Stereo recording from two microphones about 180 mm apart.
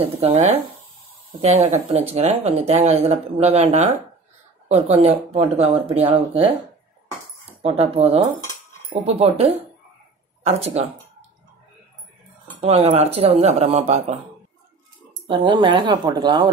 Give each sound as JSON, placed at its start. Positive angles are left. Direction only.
{"t": 0.0, "sound": "speech", "side_deg": -35}
{"t": 7.6, "sound": "speech", "side_deg": -35}
{"t": 12.5, "sound": "speech", "side_deg": -35}
{"t": 15.2, "sound": "speech", "side_deg": -25}